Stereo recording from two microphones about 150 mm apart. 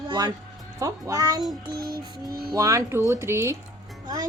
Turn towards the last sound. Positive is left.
turn(degrees=-25)  # may be behind; listen again after turning